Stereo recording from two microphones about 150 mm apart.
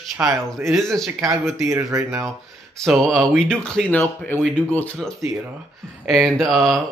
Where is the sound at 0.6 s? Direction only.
Centre (ahead or behind).